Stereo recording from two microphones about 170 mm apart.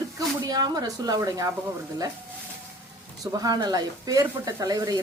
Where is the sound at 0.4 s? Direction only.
25° right (ahead or behind).